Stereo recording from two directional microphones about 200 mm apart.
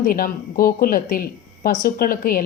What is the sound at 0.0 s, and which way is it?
Speech, 45° left (ahead or behind).